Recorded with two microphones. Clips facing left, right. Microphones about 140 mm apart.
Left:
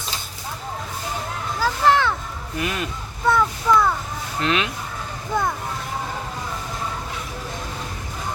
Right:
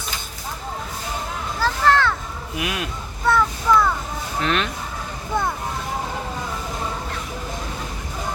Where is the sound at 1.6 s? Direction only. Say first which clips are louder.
Even; 15° left (ahead or behind).